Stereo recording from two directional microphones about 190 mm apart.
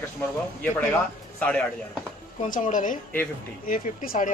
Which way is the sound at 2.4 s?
40° left (ahead or behind).